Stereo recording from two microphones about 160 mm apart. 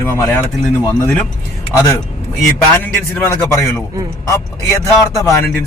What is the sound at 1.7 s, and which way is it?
A man's voice, 20° left (ahead or behind).